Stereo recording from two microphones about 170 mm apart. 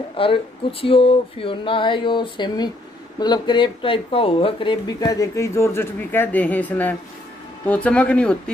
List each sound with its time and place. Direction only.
0.2 s speech: 30° left (ahead or behind); by 8.4 s 5° left (ahead or behind)